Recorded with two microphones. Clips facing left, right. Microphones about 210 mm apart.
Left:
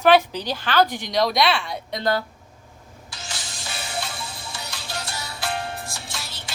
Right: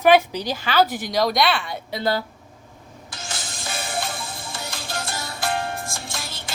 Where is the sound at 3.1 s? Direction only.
50° right (ahead or behind).